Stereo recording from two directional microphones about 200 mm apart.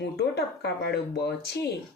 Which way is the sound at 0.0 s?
55° left (ahead or behind).